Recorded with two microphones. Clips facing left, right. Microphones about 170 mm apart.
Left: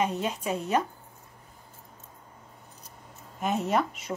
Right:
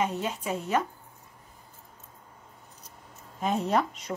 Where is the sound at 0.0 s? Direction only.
15° left (ahead or behind).